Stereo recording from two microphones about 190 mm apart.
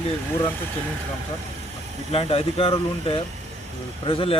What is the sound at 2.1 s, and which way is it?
Speech, 30° left (ahead or behind).